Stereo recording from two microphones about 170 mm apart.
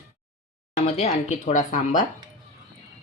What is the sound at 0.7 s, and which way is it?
Speech, 40° left (ahead or behind).